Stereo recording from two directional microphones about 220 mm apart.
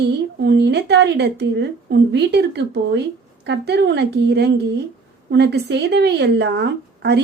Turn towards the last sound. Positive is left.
turn(degrees=-50)  # may be behind; listen again after turning